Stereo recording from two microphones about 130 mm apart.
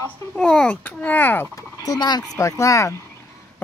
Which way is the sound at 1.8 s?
30° left (ahead or behind).